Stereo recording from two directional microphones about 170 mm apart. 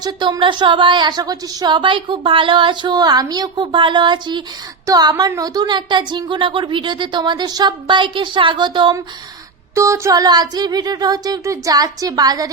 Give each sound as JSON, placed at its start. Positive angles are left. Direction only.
{"t": 0.0, "sound": "speech", "side_deg": -25}